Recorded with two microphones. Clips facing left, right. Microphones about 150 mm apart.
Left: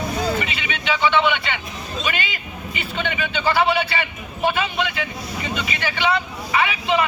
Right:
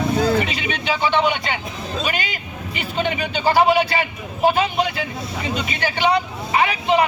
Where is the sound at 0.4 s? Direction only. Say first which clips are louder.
Right 2 dB; 40° right (ahead or behind).